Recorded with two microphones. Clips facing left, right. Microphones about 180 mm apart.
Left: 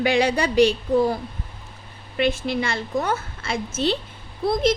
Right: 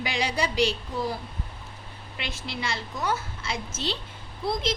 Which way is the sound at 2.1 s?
55° left (ahead or behind).